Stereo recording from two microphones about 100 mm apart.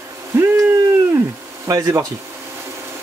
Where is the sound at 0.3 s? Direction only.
20° right (ahead or behind).